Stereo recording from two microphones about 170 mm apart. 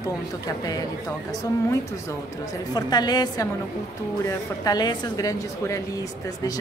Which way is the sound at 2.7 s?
25° left (ahead or behind).